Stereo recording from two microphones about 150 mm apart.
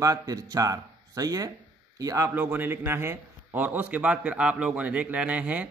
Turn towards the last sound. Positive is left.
turn(degrees=-10)  # may be behind; listen again after turning